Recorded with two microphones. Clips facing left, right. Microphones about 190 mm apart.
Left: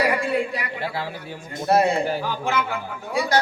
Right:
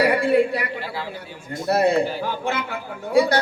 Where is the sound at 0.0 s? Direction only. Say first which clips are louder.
Right 4 dB; 60° right (ahead or behind).